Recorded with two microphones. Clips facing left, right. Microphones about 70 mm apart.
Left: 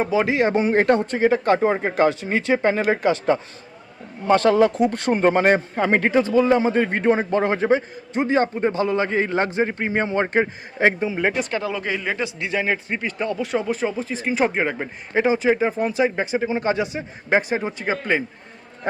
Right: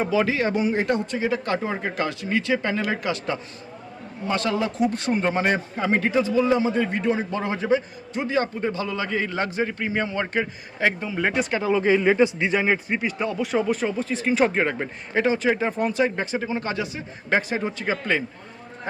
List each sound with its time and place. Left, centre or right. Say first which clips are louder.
0.1 s a man's voice: left 3 dB; left
0.5 s speech: left 5 dB; left
1.1 s speech: left 6 dB; left
11.2 s speech: right 1 dB; centre
11.5 s speech: right 5 dB; centre
12.6 s speech: right 1 dB; centre